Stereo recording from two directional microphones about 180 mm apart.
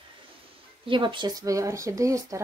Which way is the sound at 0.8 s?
25° right (ahead or behind).